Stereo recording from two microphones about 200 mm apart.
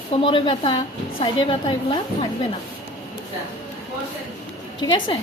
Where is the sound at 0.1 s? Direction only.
25° left (ahead or behind).